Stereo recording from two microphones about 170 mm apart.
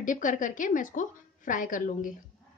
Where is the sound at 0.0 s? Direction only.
50° left (ahead or behind).